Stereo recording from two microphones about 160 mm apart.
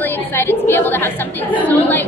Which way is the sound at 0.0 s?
15° left (ahead or behind).